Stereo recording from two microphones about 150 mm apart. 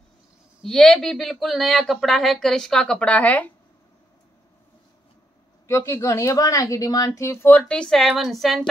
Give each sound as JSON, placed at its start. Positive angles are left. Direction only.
{"t": 0.7, "sound": "speech", "side_deg": 0}
{"t": 5.7, "sound": "a woman's voice", "side_deg": 20}